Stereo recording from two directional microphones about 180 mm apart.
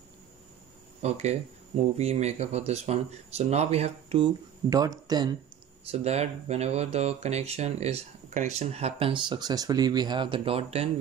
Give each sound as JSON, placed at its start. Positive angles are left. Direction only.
{"t": 1.0, "sound": "speech", "side_deg": -40}
{"t": 4.6, "sound": "speech", "side_deg": -20}
{"t": 5.9, "sound": "speech", "side_deg": -35}